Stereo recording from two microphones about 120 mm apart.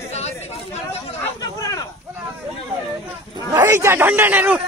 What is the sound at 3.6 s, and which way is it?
A man's voice, 20° right (ahead or behind).